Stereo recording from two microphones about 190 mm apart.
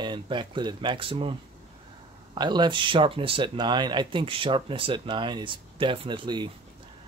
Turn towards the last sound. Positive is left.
turn(degrees=-25)  # may be behind; listen again after turning